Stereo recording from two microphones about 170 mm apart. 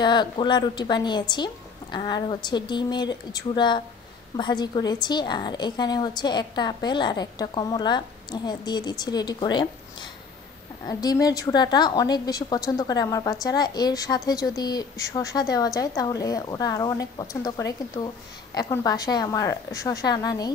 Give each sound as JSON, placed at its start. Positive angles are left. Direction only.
{"t": 0.0, "sound": "a woman's voice", "side_deg": 25}
{"t": 10.9, "sound": "a woman's voice", "side_deg": 20}